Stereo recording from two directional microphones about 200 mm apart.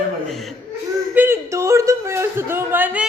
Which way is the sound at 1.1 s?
10° right (ahead or behind).